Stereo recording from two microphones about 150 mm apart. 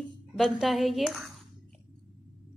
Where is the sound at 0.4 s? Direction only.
Centre (ahead or behind).